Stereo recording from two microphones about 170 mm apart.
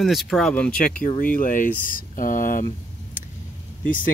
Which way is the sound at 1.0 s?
50° left (ahead or behind).